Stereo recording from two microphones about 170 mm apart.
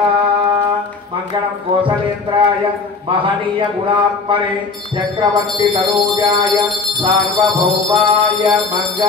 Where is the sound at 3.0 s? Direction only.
30° right (ahead or behind).